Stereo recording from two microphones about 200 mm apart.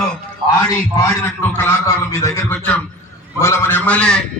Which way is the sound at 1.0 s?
15° left (ahead or behind).